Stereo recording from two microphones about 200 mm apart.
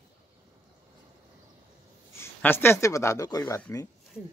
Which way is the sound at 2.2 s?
10° left (ahead or behind).